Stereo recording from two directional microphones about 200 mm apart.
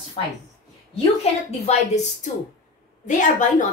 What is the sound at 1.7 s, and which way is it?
Speech, 35° left (ahead or behind).